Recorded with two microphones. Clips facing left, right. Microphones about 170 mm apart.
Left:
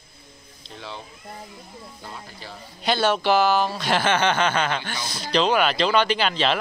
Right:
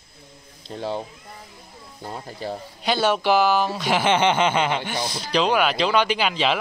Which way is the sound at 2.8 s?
10° right (ahead or behind).